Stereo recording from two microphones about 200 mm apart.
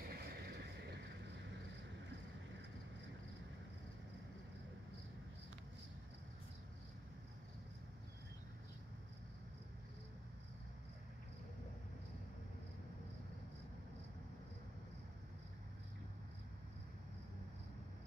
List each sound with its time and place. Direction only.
0.0 s vehicle: 50° right (ahead or behind)